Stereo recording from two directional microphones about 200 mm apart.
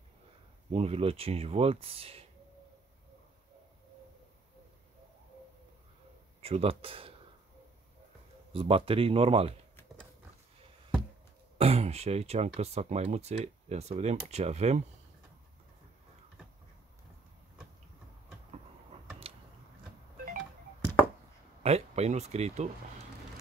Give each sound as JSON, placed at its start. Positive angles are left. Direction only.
{"t": 0.7, "sound": "speech", "side_deg": -30}
{"t": 6.4, "sound": "speech", "side_deg": -30}
{"t": 8.5, "sound": "speech", "side_deg": -25}
{"t": 11.5, "sound": "speech", "side_deg": -30}
{"t": 21.6, "sound": "speech", "side_deg": -30}